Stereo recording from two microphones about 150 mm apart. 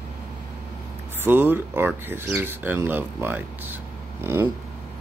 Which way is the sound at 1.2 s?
15° right (ahead or behind).